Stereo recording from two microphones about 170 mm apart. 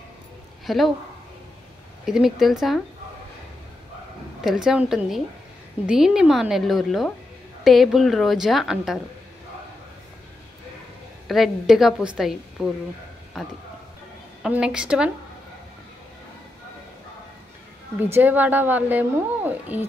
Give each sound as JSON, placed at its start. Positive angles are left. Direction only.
{"t": 0.7, "sound": "a woman's voice", "side_deg": 0}
{"t": 2.0, "sound": "a woman's voice", "side_deg": 0}
{"t": 4.4, "sound": "a woman's voice", "side_deg": -5}
{"t": 11.2, "sound": "a woman's voice", "side_deg": 0}
{"t": 17.9, "sound": "speech", "side_deg": -10}